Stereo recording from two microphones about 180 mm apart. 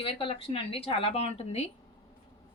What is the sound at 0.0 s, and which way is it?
A woman's voice, 30° left (ahead or behind).